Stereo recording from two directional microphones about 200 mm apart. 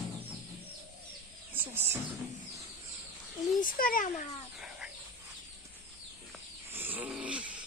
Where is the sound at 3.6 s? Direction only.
45° left (ahead or behind).